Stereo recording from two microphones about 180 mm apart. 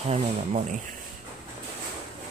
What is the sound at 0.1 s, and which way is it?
Speech, 35° right (ahead or behind).